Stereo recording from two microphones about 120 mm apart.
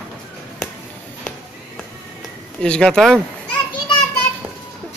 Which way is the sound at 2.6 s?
5° left (ahead or behind).